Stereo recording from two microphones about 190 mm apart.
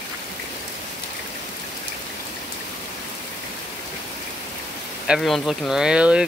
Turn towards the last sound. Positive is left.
turn(degrees=-5)  # may be behind; listen again after turning